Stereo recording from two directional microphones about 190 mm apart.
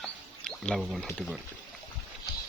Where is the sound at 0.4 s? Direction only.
Centre (ahead or behind).